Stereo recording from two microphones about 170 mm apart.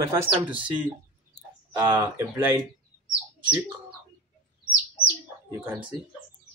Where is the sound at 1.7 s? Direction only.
10° right (ahead or behind).